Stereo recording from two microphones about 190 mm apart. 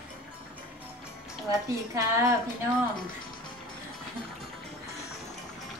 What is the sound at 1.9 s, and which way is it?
Speech, 15° right (ahead or behind).